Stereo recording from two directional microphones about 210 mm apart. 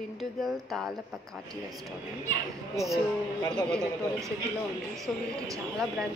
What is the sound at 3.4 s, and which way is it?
Speech, 10° left (ahead or behind).